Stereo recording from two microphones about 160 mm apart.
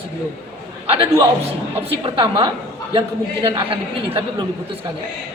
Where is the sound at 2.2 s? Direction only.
30° right (ahead or behind).